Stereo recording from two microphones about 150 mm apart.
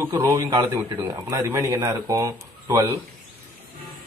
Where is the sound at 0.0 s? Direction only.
20° right (ahead or behind).